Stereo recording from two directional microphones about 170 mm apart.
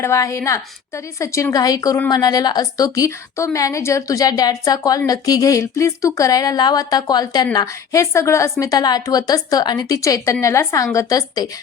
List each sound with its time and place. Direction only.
0.0 s a woman's voice: 15° left (ahead or behind)